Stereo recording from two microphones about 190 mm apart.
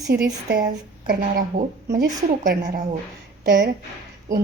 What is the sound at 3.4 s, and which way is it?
Speech, 60° right (ahead or behind).